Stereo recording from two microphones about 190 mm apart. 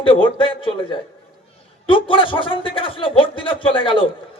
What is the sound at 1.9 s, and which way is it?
A man's voice, 25° left (ahead or behind).